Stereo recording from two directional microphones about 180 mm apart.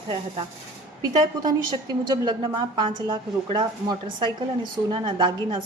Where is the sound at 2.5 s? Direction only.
25° right (ahead or behind).